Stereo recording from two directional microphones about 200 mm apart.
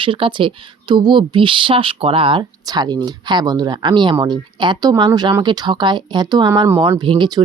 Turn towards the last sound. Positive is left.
turn(degrees=-20)  # may be behind; listen again after turning